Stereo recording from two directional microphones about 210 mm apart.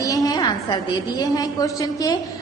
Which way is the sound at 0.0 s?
15° left (ahead or behind).